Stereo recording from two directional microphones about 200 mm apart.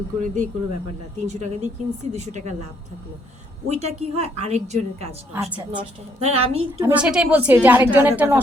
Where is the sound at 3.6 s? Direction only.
35° right (ahead or behind).